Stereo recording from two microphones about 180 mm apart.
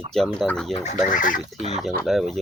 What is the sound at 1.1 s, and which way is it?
Speech, 50° left (ahead or behind).